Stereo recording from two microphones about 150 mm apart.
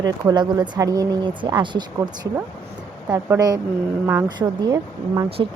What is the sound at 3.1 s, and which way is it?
Speech, 25° right (ahead or behind).